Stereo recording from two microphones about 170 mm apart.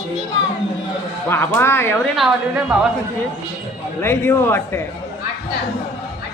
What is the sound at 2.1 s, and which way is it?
Speech, centre (ahead or behind).